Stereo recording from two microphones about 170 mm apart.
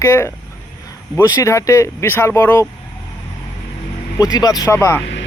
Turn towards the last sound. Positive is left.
turn(degrees=15)  # may be behind; listen again after turning